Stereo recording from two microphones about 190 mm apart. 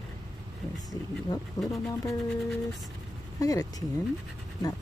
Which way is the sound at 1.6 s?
20° left (ahead or behind).